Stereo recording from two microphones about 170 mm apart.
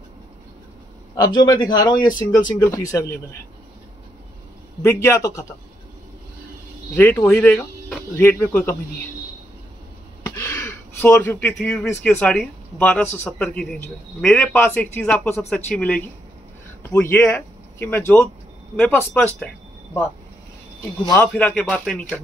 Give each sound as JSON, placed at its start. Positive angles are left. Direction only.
{"t": 1.1, "sound": "a man's voice", "side_deg": 25}
{"t": 4.8, "sound": "speech", "side_deg": 15}
{"t": 7.0, "sound": "speech", "side_deg": 10}
{"t": 10.2, "sound": "a sound", "side_deg": 15}
{"t": 12.0, "sound": "a man's voice", "side_deg": 5}
{"t": 21.2, "sound": "a man's voice", "side_deg": 5}